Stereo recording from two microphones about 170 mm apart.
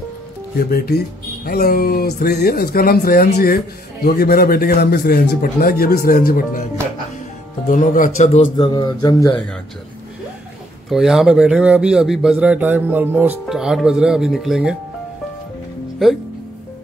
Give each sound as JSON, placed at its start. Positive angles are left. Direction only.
{"t": 0.6, "sound": "speech", "side_deg": 60}
{"t": 7.6, "sound": "speech", "side_deg": 50}
{"t": 8.5, "sound": "speech", "side_deg": 25}
{"t": 10.9, "sound": "a man's voice", "side_deg": 0}